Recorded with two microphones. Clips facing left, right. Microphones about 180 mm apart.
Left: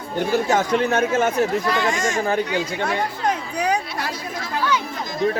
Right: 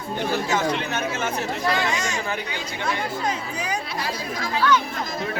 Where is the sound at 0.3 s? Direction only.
45° left (ahead or behind); by 4.1 s 65° left (ahead or behind).